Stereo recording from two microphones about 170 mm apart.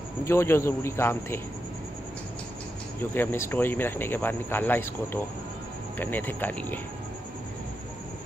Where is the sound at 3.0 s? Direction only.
15° left (ahead or behind).